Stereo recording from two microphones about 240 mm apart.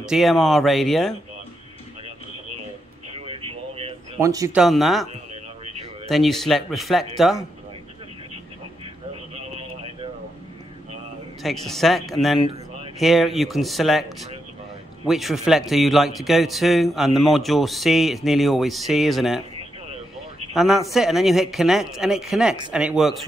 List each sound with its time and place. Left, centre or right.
0.0 s a man's voice: centre
3.3 s vehicle: right
4.2 s speech: centre
4.6 s a man's voice: centre
9.1 s a sound: right
11.4 s a man's voice: centre
20.5 s a man's voice: centre